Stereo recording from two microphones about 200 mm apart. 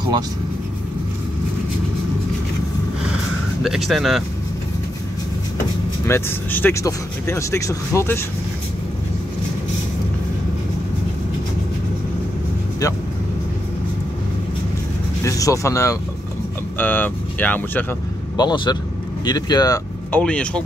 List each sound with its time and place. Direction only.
3.6 s speech: centre (ahead or behind)
6.0 s speech: 10° left (ahead or behind)
15.2 s speech: 15° left (ahead or behind)
18.3 s speech: 20° left (ahead or behind)
20.1 s speech: 5° left (ahead or behind)